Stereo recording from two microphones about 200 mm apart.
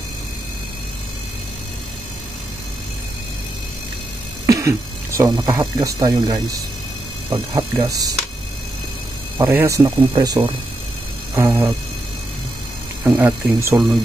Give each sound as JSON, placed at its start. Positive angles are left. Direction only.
{"t": 4.5, "sound": "speech", "side_deg": -15}
{"t": 7.2, "sound": "speech", "side_deg": -10}
{"t": 9.4, "sound": "speech", "side_deg": -15}
{"t": 13.0, "sound": "speech", "side_deg": -10}